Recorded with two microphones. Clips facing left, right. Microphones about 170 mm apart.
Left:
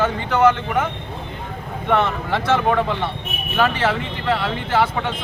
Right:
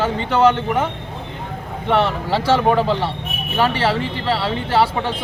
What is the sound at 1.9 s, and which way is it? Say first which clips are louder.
Speech: right 2 dB; 30° right (ahead or behind).